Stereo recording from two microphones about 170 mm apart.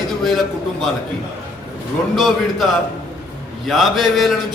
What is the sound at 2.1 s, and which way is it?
Speech, centre (ahead or behind).